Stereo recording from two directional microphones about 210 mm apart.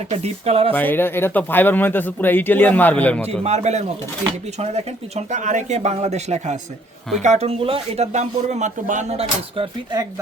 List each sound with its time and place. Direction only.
0.1 s speech: 30° right (ahead or behind)
0.7 s speech: 10° left (ahead or behind)
3.4 s speech: 30° right (ahead or behind)